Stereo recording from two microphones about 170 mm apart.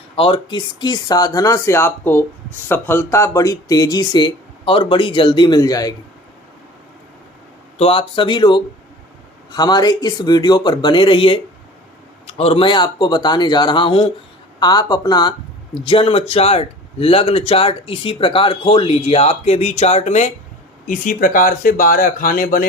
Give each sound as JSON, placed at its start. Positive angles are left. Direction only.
{"t": 0.2, "sound": "speech", "side_deg": 30}
{"t": 7.8, "sound": "speech", "side_deg": 35}